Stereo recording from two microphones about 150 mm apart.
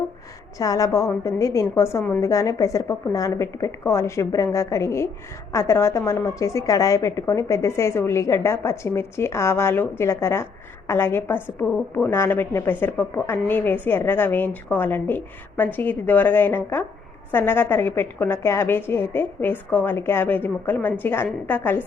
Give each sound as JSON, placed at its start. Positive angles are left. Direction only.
{"t": 0.6, "sound": "a woman's voice", "side_deg": 25}